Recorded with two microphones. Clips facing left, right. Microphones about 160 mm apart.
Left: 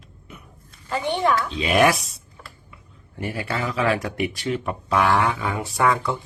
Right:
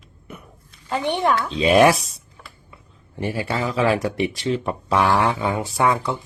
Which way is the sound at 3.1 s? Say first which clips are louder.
Right 3 dB; 30° right (ahead or behind).